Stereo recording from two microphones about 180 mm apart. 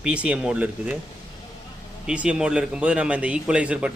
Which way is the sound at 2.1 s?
5° right (ahead or behind).